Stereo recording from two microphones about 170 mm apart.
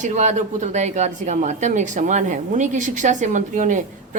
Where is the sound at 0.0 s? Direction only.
45° right (ahead or behind).